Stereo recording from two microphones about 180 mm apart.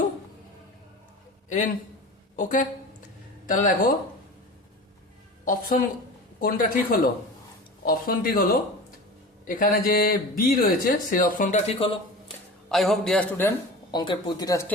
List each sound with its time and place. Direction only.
1.5 s a man's voice: 45° left (ahead or behind)
5.5 s speech: 50° left (ahead or behind); by 11.9 s 30° left (ahead or behind)
12.6 s a man's voice: centre (ahead or behind)
13.9 s speech: 25° left (ahead or behind)